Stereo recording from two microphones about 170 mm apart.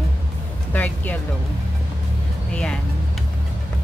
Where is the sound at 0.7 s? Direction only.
10° left (ahead or behind).